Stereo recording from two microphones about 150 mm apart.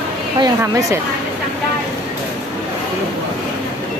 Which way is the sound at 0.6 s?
20° right (ahead or behind).